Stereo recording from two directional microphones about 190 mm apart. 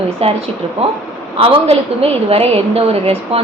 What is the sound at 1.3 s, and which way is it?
A woman's voice, 30° right (ahead or behind).